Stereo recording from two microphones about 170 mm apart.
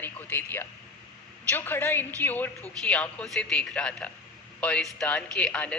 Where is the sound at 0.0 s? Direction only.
10° left (ahead or behind).